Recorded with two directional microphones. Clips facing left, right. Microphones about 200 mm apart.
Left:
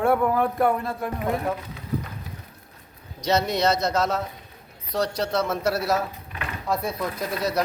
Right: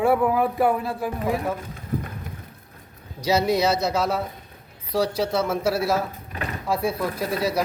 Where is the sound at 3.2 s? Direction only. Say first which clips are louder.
Right 2 dB; 5° right (ahead or behind).